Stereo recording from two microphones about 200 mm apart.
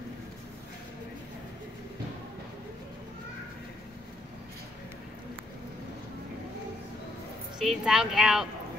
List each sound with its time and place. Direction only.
7.5 s speech: centre (ahead or behind)